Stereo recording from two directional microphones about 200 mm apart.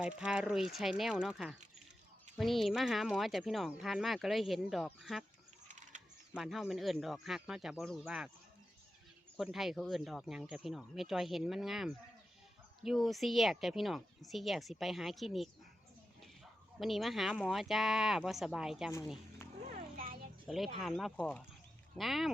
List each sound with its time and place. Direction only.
0.0 s speech: 5° right (ahead or behind)
5.6 s a sound: 35° right (ahead or behind)
6.3 s speech: centre (ahead or behind)
9.4 s speech: centre (ahead or behind)
16.8 s speech: centre (ahead or behind)
19.6 s children playing: 40° right (ahead or behind)
20.5 s speech: centre (ahead or behind)